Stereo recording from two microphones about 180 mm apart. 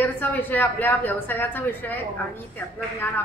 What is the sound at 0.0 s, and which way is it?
A woman's voice, 10° left (ahead or behind).